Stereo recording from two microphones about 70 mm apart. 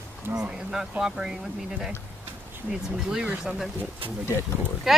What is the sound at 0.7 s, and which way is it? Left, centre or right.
Speech, centre.